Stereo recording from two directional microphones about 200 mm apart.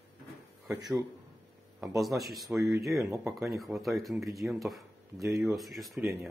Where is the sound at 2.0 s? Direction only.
Centre (ahead or behind).